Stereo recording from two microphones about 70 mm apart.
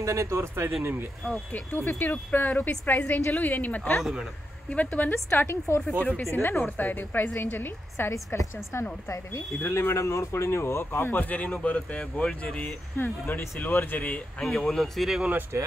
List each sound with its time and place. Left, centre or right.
0.0 s speech: right
1.9 s a woman's voice: left
4.0 s speech: centre
4.6 s a woman's voice: left
5.1 s speech: left
5.9 s a woman's voice: left
6.3 s a woman's voice: left; by 12.4 s centre
12.9 s a woman's voice: left
14.4 s speech: centre
15.5 s speech: right